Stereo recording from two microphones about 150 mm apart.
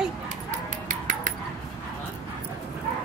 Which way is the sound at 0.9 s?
60° right (ahead or behind).